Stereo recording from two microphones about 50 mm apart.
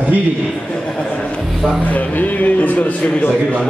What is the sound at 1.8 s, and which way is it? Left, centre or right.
Speech, left.